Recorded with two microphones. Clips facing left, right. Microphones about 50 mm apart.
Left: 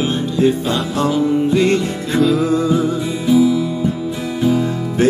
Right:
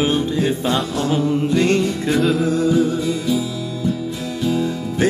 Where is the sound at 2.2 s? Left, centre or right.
Centre.